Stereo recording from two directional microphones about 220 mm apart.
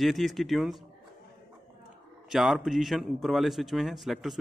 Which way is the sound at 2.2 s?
Centre (ahead or behind).